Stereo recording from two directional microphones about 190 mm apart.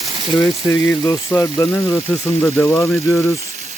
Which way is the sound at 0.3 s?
15° left (ahead or behind).